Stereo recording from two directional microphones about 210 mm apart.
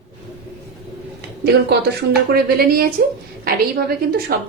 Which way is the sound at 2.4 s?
45° right (ahead or behind).